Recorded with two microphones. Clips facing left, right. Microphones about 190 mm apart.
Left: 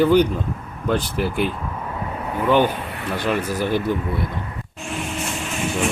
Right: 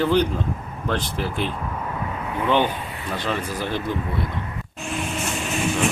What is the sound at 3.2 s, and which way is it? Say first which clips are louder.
Speech: left 5 dB; 10° left (ahead or behind).